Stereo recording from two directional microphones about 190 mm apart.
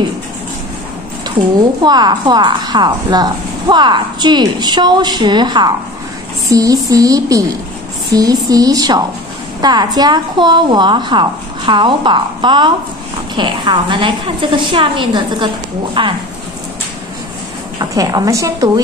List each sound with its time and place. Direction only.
1.8 s a woman's voice: 20° right (ahead or behind)
17.7 s a woman's voice: 20° right (ahead or behind)